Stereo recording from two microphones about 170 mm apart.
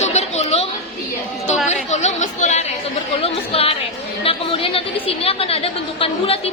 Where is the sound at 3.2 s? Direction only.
35° left (ahead or behind).